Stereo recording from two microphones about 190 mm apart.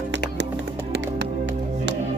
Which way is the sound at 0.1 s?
70° right (ahead or behind).